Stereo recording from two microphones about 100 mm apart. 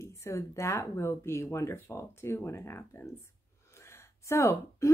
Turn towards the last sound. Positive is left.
turn(degrees=30)  # may be behind; listen again after turning